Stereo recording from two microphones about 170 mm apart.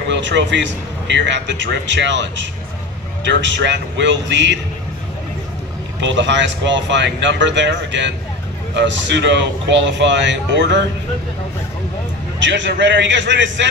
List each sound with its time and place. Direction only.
0.1 s a man's voice: 90° right
5.9 s a man's voice: 90° right
12.4 s a man's voice: 90° right